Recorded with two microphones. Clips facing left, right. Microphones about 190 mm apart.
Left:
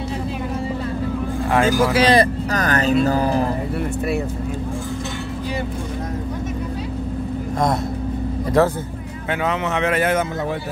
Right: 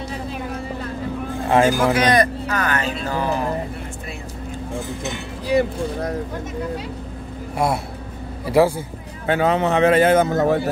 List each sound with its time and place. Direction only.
1.5 s speech: 25° right (ahead or behind)
2.0 s speech: 30° left (ahead or behind)
8.5 s speech: 10° right (ahead or behind)
9.3 s speech: 35° right (ahead or behind)
10.3 s speech: 45° right (ahead or behind)